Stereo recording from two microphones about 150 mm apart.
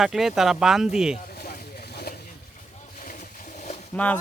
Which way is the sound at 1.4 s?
85° left.